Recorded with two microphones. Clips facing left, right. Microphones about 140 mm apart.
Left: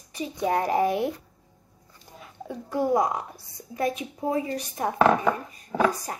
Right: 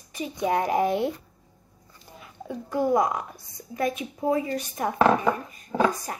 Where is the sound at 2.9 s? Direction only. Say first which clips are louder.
Right 1 dB; 30° left (ahead or behind).